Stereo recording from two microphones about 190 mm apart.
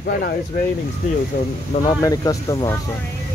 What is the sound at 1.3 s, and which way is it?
Speech, 55° left (ahead or behind).